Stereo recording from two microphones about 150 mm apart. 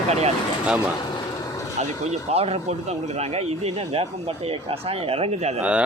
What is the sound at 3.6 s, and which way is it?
Speech, 40° right (ahead or behind).